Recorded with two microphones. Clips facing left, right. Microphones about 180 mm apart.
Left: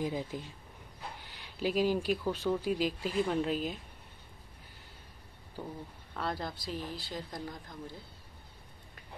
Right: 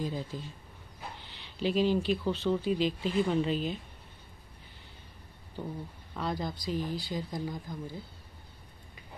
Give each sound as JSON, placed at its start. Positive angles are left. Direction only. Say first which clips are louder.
{"t": 0.0, "sound": "speech", "louder": "left 1 dB", "side_deg": 15}
{"t": 6.1, "sound": "speech", "louder": "right 2 dB", "side_deg": 0}